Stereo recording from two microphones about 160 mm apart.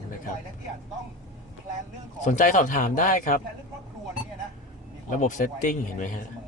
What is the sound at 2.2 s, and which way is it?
A man's voice, 55° left (ahead or behind).